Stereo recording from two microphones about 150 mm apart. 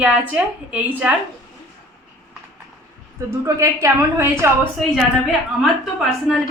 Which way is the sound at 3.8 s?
15° right (ahead or behind).